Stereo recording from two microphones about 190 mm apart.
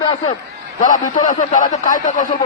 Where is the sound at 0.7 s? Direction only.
40° left (ahead or behind).